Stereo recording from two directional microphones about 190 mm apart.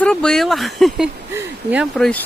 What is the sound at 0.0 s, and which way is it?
Speech, 5° left (ahead or behind).